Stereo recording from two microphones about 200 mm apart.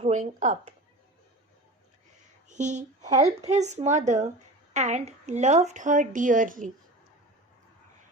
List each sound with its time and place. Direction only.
0.0 s speech: 35° right (ahead or behind)
2.5 s speech: 35° right (ahead or behind)
3.1 s a woman's voice: 15° right (ahead or behind)
3.3 s a woman's voice: 35° right (ahead or behind)